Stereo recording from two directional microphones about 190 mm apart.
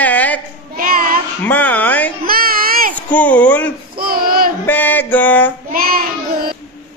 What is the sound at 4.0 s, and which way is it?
Child singing, 50° right (ahead or behind).